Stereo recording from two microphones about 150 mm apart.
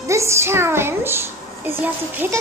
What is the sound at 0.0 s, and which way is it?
A woman's voice, 20° right (ahead or behind).